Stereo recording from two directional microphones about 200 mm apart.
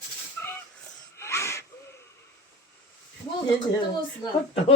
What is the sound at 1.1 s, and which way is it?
Wheeze, 15° left (ahead or behind).